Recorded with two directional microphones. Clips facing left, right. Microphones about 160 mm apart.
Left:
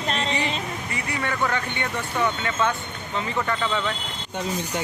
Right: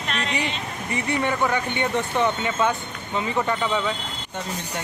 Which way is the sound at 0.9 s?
20° right (ahead or behind).